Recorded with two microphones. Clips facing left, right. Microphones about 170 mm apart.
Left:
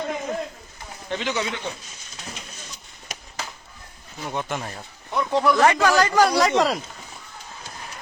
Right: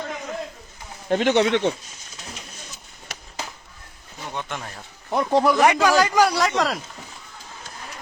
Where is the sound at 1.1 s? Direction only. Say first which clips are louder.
Right 9 dB; 55° right (ahead or behind); by 1.7 s 75° right (ahead or behind).